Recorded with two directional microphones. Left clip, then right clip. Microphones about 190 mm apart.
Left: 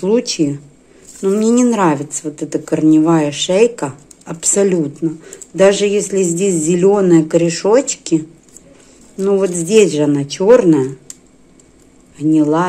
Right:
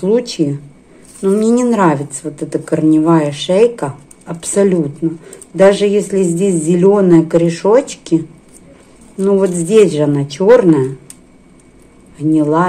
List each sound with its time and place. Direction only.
0.0 s speech: 20° left (ahead or behind)
9.2 s speech: 15° left (ahead or behind)
12.2 s speech: 15° left (ahead or behind)